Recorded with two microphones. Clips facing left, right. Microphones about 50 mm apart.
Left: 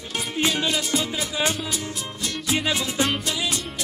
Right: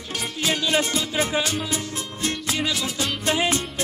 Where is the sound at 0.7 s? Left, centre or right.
Right.